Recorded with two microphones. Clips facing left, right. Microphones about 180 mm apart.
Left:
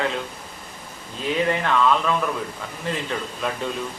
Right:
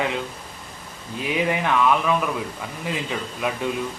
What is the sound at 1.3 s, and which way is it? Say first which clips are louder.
Speech: even; 15° right (ahead or behind).